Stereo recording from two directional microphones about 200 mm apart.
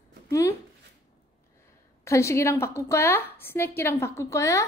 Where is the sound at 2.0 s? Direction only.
15° left (ahead or behind).